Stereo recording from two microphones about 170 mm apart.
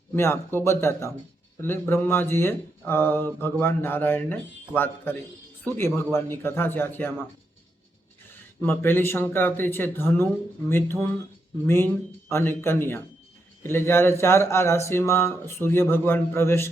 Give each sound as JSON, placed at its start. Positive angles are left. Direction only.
{"t": 0.2, "sound": "speech", "side_deg": 15}
{"t": 8.3, "sound": "speech", "side_deg": 15}